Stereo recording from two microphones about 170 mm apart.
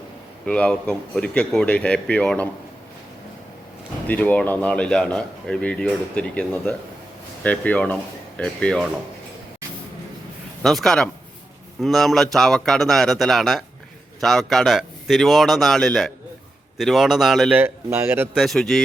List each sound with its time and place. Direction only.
0.4 s a man's voice: 5° left (ahead or behind)
4.0 s a man's voice: 10° left (ahead or behind)
10.6 s speech: centre (ahead or behind)
17.5 s a man's voice: 15° right (ahead or behind)
18.3 s speech: centre (ahead or behind)